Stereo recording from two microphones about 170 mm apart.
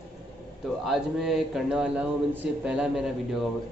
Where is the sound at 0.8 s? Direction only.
Centre (ahead or behind).